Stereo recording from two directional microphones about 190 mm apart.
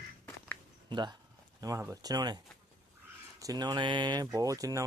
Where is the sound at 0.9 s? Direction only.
20° right (ahead or behind).